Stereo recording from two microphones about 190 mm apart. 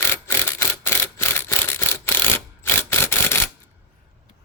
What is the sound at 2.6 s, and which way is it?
Clock, 10° left (ahead or behind).